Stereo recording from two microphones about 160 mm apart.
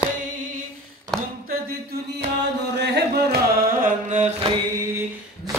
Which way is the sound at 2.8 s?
90° right.